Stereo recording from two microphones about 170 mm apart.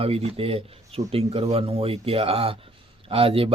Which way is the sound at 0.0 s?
35° right (ahead or behind).